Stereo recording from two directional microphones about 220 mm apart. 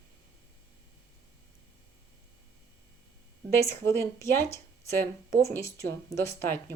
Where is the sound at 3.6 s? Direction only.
10° left (ahead or behind).